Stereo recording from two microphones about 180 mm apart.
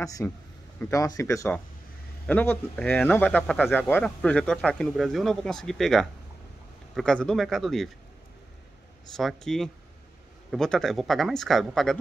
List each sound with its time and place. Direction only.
0.0 s speech: 20° left (ahead or behind); by 7.9 s centre (ahead or behind)
9.1 s speech: 5° left (ahead or behind)